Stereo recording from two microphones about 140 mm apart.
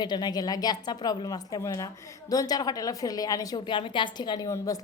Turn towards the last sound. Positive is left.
turn(degrees=20)  # may be behind; listen again after turning